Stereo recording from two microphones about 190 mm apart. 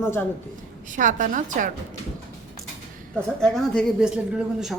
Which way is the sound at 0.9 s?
45° right (ahead or behind).